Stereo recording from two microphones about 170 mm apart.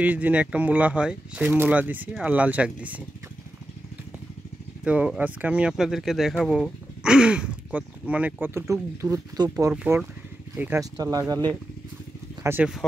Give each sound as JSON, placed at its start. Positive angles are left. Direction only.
{"t": 0.0, "sound": "speech", "side_deg": -10}
{"t": 4.8, "sound": "speech", "side_deg": -5}
{"t": 9.9, "sound": "speech", "side_deg": -10}
{"t": 12.4, "sound": "speech", "side_deg": -10}